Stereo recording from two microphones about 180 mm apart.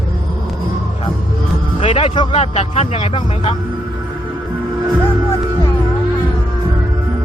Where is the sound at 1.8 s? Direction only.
30° left (ahead or behind).